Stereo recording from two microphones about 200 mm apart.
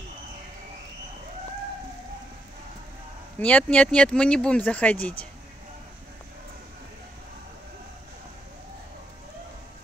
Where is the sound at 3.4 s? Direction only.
5° left (ahead or behind).